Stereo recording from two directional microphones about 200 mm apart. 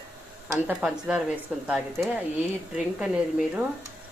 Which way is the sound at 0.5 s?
5° right (ahead or behind).